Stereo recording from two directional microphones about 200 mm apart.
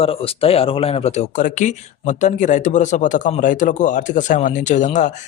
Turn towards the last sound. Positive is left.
turn(degrees=35)  # may be behind; listen again after turning